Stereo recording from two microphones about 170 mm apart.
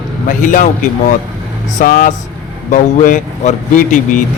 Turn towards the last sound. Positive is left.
turn(degrees=50)  # may be behind; listen again after turning